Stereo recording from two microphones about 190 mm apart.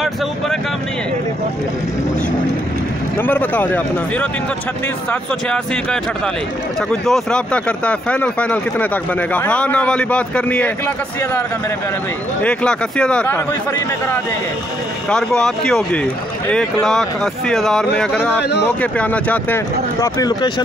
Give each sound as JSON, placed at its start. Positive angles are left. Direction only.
{"t": 3.2, "sound": "speech", "side_deg": 10}
{"t": 5.5, "sound": "speech", "side_deg": 5}
{"t": 12.4, "sound": "speech", "side_deg": 5}
{"t": 15.0, "sound": "speech", "side_deg": 5}
{"t": 18.4, "sound": "speech", "side_deg": 60}
{"t": 18.8, "sound": "speech", "side_deg": 5}